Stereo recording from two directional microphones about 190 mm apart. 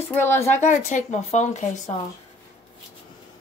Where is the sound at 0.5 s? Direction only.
40° left (ahead or behind).